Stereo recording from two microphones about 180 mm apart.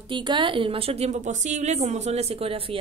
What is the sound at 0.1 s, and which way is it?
A woman's voice, 25° right (ahead or behind).